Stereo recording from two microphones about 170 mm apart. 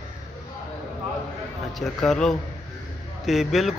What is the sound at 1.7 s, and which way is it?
A man's voice, 5° left (ahead or behind).